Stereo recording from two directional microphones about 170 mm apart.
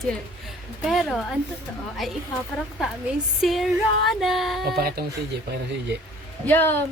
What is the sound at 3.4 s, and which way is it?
Female singing, centre (ahead or behind).